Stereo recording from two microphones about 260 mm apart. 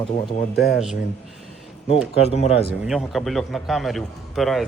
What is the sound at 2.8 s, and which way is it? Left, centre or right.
A man's voice, centre.